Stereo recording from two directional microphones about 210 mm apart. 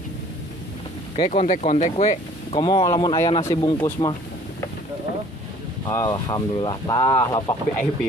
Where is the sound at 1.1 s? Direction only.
30° left (ahead or behind).